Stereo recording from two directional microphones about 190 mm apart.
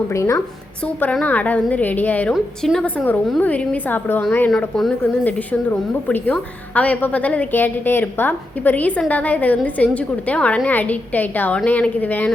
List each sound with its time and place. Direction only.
0.1 s a woman's voice: 15° left (ahead or behind)